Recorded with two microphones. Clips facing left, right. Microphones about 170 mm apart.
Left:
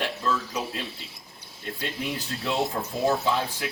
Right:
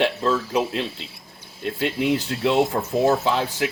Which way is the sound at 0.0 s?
80° right.